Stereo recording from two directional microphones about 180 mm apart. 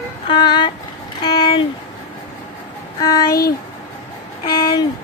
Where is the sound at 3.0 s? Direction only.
20° left (ahead or behind).